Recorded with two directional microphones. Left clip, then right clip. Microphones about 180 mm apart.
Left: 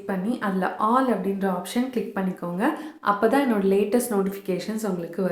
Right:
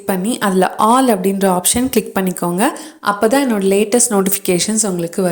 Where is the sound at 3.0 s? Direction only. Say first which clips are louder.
Right 7 dB; 35° right (ahead or behind).